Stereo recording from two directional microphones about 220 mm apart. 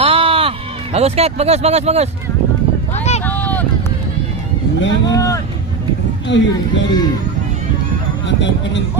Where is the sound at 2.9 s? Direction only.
30° left (ahead or behind).